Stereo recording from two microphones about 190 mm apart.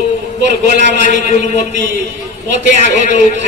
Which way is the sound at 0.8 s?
40° left (ahead or behind).